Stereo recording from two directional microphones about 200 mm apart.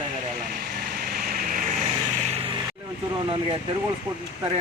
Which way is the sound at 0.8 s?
45° right (ahead or behind).